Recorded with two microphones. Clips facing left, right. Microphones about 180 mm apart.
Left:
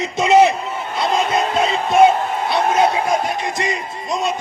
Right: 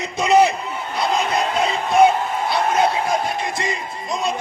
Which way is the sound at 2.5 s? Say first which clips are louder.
Left 3 dB; 25° left (ahead or behind).